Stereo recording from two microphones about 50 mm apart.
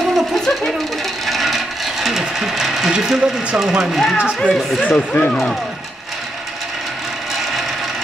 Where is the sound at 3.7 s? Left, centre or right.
Centre.